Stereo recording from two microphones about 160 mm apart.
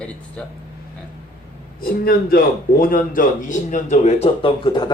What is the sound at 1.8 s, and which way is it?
A man's voice, 70° left (ahead or behind).